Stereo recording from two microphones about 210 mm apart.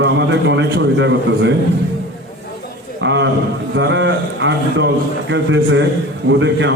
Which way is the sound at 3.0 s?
60° right (ahead or behind).